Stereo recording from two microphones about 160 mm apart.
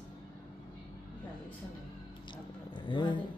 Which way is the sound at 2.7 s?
30° left (ahead or behind).